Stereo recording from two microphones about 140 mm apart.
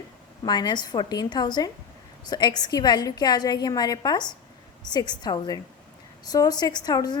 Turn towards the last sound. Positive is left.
turn(degrees=30)  # may be behind; listen again after turning